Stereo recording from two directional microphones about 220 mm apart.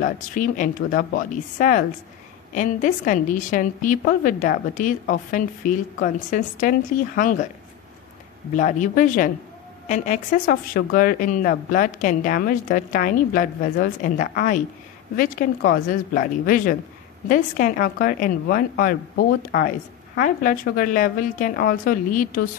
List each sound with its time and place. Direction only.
0.0 s speech: 40° left (ahead or behind)
8.5 s speech: 35° left (ahead or behind)